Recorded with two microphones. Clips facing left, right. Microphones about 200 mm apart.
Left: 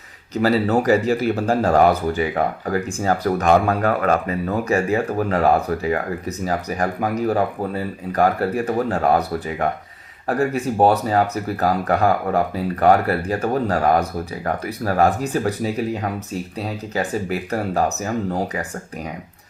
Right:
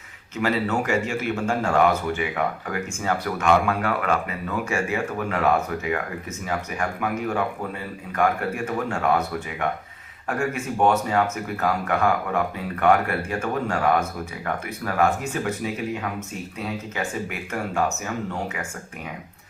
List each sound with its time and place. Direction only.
0.3 s speech: 35° left (ahead or behind)